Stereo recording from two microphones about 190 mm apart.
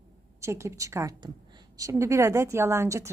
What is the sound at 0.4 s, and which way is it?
Speech, 15° right (ahead or behind).